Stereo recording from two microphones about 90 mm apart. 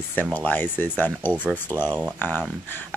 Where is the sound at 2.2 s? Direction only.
20° left (ahead or behind).